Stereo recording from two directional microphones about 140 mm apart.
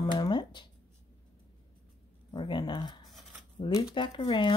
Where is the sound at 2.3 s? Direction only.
35° left (ahead or behind).